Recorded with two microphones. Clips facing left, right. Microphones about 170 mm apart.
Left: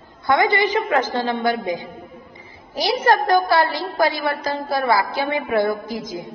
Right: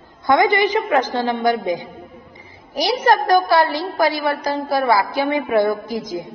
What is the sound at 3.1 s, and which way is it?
A woman's voice, 15° right (ahead or behind).